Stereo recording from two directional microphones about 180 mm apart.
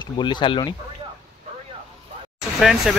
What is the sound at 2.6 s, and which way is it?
Speech, centre (ahead or behind).